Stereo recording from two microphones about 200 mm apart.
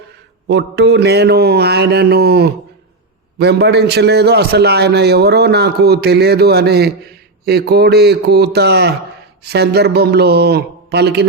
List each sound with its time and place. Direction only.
0.4 s a man's voice: 60° right (ahead or behind)